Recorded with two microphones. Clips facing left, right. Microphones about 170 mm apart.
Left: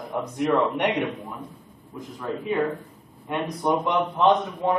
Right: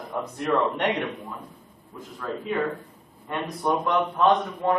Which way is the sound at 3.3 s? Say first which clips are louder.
Left 2 dB; 15° left (ahead or behind).